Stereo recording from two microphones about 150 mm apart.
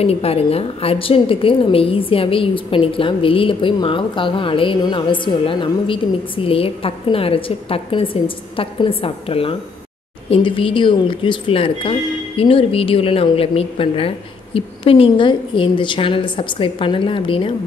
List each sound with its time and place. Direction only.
0.0 s a woman's voice: 40° left (ahead or behind)